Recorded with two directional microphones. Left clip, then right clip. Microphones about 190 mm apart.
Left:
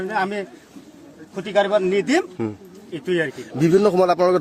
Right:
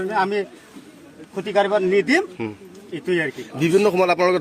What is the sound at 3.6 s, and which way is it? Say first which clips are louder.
Speech: left 1 dB; 60° left (ahead or behind).